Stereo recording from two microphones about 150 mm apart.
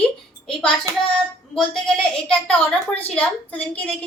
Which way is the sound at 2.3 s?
10° left (ahead or behind).